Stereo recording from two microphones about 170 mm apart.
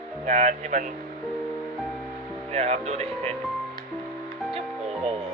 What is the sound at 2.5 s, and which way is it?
Speech, 40° right (ahead or behind).